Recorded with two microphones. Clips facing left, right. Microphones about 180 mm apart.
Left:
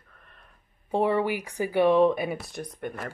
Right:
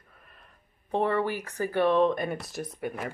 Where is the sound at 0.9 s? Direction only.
10° left (ahead or behind).